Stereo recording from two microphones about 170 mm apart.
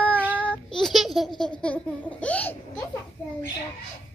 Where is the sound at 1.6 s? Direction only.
5° left (ahead or behind).